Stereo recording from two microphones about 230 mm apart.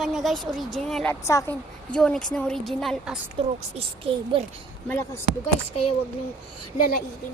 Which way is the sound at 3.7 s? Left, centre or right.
Right.